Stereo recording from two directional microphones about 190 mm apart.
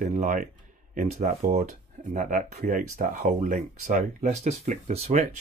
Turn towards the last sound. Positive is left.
turn(degrees=-35)  # may be behind; listen again after turning